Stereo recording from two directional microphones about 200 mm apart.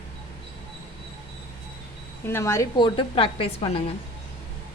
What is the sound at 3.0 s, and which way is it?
Speech, 25° left (ahead or behind).